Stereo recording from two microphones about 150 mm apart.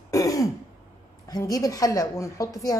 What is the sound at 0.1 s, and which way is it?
Throat clearing, 20° left (ahead or behind).